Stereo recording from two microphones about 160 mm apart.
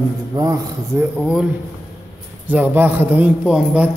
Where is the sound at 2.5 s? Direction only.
10° right (ahead or behind).